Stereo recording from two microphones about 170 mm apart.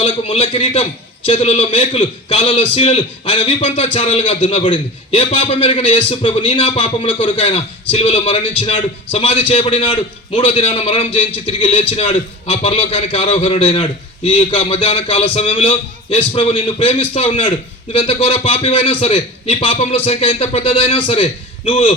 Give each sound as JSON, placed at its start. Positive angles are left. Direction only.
{"t": 0.0, "sound": "a man's voice", "side_deg": 35}